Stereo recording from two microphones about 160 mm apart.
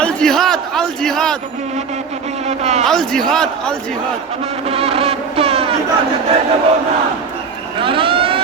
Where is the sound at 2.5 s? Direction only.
45° right (ahead or behind).